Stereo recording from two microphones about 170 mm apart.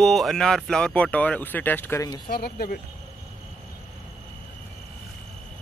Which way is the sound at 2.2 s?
65° left (ahead or behind).